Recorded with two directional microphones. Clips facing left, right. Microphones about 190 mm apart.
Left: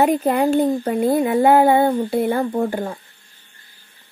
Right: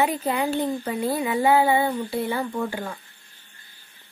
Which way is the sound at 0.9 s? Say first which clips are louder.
Left 7 dB; 50° left (ahead or behind).